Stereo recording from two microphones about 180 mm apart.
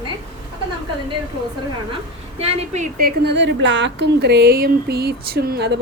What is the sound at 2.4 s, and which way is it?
Speech, 40° right (ahead or behind).